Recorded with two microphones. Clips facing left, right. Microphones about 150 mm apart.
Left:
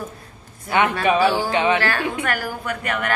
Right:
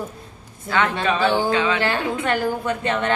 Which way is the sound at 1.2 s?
20° right (ahead or behind).